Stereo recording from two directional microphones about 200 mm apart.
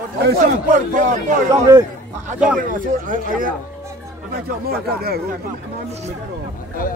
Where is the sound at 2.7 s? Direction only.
40° right (ahead or behind).